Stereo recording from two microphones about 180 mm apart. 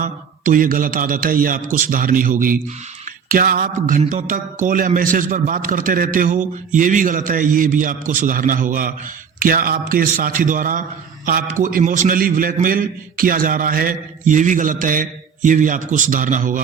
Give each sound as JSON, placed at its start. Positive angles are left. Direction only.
{"t": 0.0, "sound": "speech", "side_deg": -50}